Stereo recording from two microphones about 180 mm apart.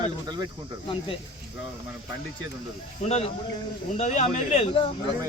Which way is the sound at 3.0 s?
35° left (ahead or behind).